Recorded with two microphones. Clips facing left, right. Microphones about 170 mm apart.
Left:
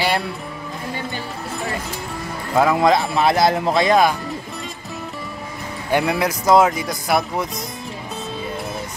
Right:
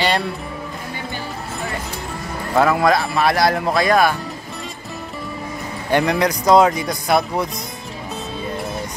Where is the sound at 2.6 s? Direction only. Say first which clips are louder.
Left 1 dB; 20° left (ahead or behind).